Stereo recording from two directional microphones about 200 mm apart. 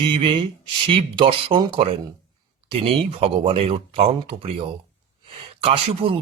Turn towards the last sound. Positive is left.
turn(degrees=-30)  # may be behind; listen again after turning